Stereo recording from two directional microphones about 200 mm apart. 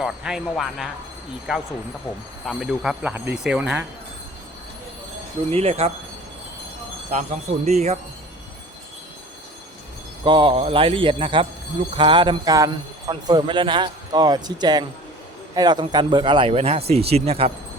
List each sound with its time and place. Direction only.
0.0 s speech: 5° right (ahead or behind)
2.5 s speech: centre (ahead or behind)
5.5 s speech: 30° right (ahead or behind)
7.1 s speech: 35° right (ahead or behind)
10.2 s speech: 25° right (ahead or behind)